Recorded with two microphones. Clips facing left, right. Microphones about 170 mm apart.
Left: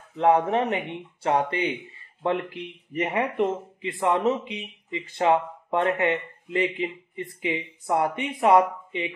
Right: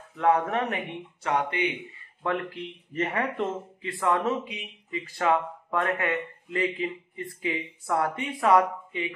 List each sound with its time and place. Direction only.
0.1 s speech: 25° left (ahead or behind)